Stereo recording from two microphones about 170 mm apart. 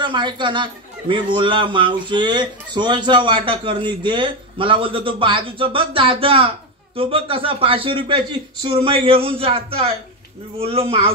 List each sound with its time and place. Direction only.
0.0 s a man's voice: 30° right (ahead or behind)